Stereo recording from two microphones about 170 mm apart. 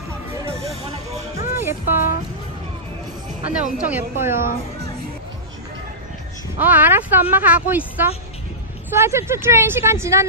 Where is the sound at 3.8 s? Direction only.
10° right (ahead or behind).